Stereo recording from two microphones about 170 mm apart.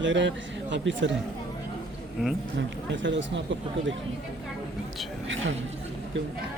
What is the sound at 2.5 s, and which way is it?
Speech, 90° right.